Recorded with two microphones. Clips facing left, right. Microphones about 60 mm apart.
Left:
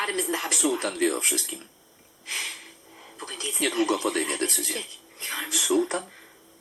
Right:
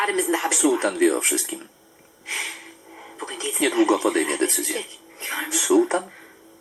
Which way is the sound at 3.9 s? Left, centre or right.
Right.